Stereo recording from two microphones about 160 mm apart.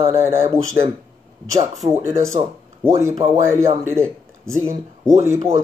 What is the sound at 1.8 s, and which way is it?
Speech, 20° right (ahead or behind).